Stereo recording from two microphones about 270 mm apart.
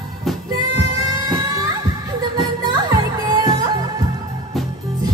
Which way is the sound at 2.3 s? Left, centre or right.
Centre.